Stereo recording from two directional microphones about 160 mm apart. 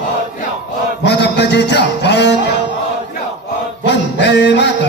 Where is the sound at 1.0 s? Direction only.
90° left.